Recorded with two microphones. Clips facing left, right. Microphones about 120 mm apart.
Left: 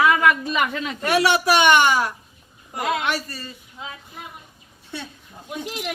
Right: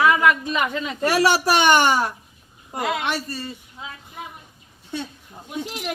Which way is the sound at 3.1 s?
35° right (ahead or behind).